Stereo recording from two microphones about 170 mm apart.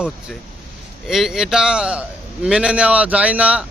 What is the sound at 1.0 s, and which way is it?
A man's voice, centre (ahead or behind).